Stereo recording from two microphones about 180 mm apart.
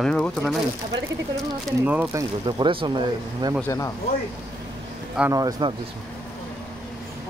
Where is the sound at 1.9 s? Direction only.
10° right (ahead or behind).